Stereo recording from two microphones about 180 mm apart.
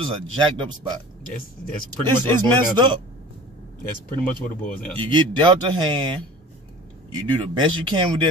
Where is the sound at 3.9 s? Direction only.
50° left (ahead or behind).